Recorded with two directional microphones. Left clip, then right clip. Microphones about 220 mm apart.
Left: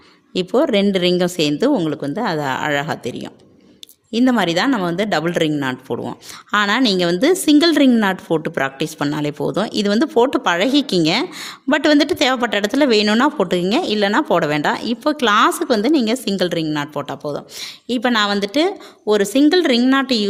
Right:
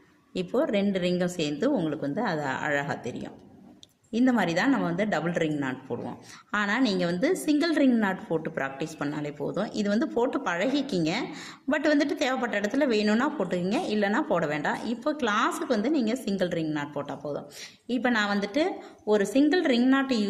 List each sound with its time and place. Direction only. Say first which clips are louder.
0.3 s speech: left 10 dB; 40° left (ahead or behind)